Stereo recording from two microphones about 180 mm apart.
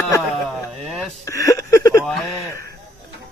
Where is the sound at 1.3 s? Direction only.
15° left (ahead or behind).